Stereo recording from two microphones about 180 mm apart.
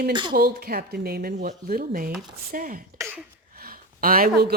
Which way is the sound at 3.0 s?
15° right (ahead or behind).